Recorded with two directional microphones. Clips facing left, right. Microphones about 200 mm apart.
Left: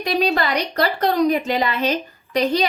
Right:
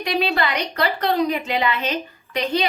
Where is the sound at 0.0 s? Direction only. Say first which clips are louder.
Left 2 dB; 40° left (ahead or behind).